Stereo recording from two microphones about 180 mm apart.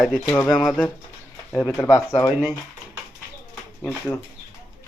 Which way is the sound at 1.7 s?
15° left (ahead or behind).